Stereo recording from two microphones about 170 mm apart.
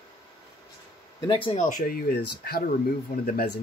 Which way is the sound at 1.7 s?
60° left (ahead or behind).